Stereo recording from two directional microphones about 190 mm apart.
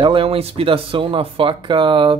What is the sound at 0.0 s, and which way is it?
Speech, 30° right (ahead or behind).